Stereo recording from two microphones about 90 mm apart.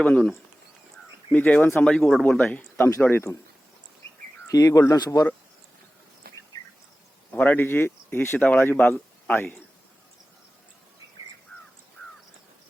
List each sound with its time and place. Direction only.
0.0 s speech: 10° left (ahead or behind)
2.7 s a man's voice: 25° left (ahead or behind)
4.4 s speech: 40° left (ahead or behind)
7.3 s speech: 20° left (ahead or behind)